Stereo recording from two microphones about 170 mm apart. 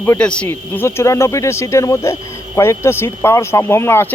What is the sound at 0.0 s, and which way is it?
Speech, 10° left (ahead or behind).